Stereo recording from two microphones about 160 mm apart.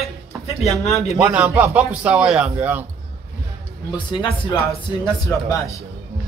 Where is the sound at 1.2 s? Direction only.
10° right (ahead or behind).